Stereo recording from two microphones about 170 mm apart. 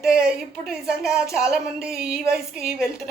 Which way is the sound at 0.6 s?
5° right (ahead or behind).